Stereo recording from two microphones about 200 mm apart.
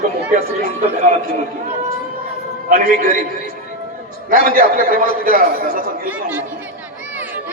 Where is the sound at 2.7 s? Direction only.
40° right (ahead or behind).